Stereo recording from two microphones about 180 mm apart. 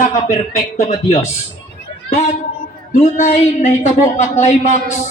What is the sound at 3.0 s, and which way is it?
Speech, 40° left (ahead or behind).